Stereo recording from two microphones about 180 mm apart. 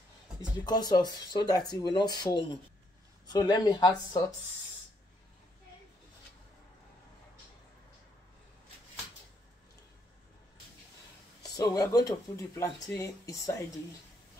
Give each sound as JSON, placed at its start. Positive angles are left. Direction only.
{"t": 0.7, "sound": "speech", "side_deg": 20}
{"t": 11.5, "sound": "speech", "side_deg": 20}